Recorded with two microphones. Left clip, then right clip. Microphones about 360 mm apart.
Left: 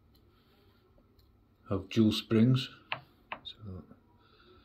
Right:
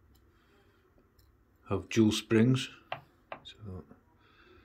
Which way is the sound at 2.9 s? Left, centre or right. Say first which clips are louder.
Left 2 dB; right.